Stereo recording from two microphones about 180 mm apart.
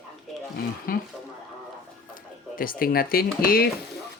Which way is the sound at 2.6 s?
55° left (ahead or behind).